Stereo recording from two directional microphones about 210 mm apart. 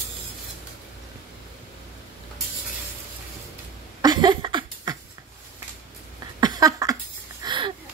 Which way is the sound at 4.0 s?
20° right (ahead or behind).